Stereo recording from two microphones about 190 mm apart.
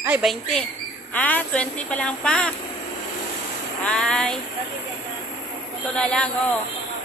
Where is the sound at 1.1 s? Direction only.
10° left (ahead or behind).